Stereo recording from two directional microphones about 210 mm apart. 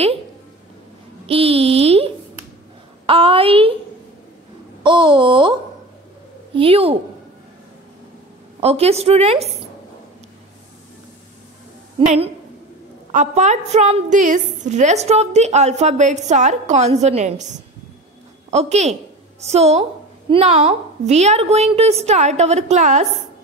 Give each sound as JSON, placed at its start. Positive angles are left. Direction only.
{"t": 1.2, "sound": "a sound", "side_deg": -25}
{"t": 3.1, "sound": "a woman's voice", "side_deg": -25}
{"t": 4.8, "sound": "a woman's voice", "side_deg": -25}
{"t": 8.5, "sound": "a woman's voice", "side_deg": -30}
{"t": 13.1, "sound": "a woman's voice", "side_deg": -35}